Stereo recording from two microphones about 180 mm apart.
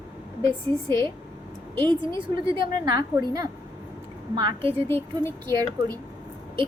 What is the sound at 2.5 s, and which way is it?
A woman's voice, 25° right (ahead or behind).